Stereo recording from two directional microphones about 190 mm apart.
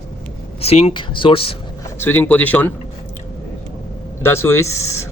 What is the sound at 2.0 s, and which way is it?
Speech, 10° left (ahead or behind).